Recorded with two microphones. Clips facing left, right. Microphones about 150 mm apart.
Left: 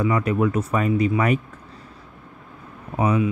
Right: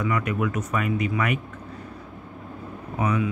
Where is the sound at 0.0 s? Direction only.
30° left (ahead or behind).